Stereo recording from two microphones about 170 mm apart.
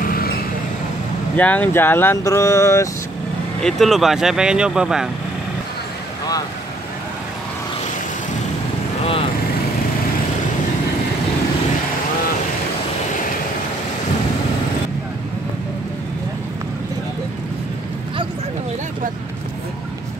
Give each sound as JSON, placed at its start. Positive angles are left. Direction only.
{"t": 0.0, "sound": "a sound", "side_deg": 60}
{"t": 1.3, "sound": "speech", "side_deg": 10}
{"t": 3.6, "sound": "speech", "side_deg": 0}
{"t": 9.0, "sound": "vehicle", "side_deg": 35}